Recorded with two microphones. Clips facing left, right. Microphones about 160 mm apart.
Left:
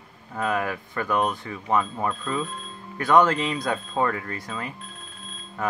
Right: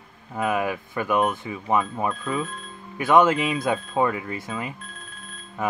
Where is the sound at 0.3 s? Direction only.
10° right (ahead or behind).